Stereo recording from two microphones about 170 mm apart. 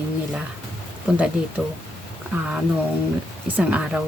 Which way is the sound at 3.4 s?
10° right (ahead or behind).